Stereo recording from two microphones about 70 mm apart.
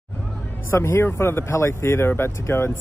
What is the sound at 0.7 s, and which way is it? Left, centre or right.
Speech, left.